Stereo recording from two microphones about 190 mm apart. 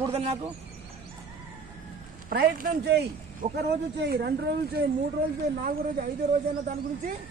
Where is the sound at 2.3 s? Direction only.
50° right (ahead or behind).